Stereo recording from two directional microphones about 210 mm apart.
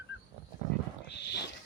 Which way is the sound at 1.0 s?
55° left (ahead or behind).